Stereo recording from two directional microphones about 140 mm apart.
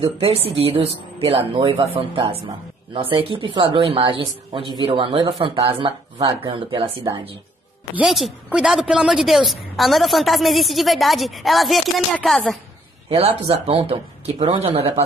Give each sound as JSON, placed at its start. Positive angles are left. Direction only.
{"t": 0.0, "sound": "speech", "side_deg": -40}
{"t": 7.9, "sound": "a woman's voice", "side_deg": -5}
{"t": 13.1, "sound": "speech", "side_deg": -40}